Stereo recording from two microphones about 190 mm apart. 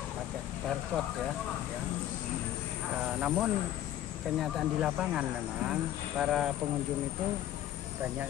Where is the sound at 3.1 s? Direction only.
5° right (ahead or behind).